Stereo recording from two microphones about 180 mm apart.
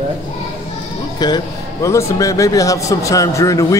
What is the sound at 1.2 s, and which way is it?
A man's voice, 20° left (ahead or behind).